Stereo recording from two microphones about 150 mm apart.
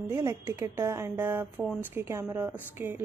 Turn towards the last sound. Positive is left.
turn(degrees=-15)  # may be behind; listen again after turning